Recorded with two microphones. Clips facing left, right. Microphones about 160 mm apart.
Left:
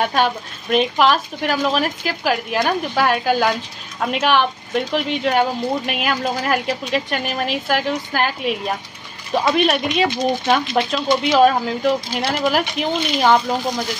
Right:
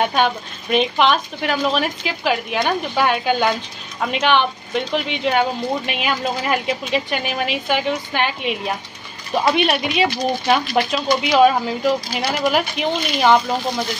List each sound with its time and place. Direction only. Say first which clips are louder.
0.0 s speech: even; centre (ahead or behind)
10.6 s speech: even; 20° left (ahead or behind)
11.2 s speech: even; centre (ahead or behind)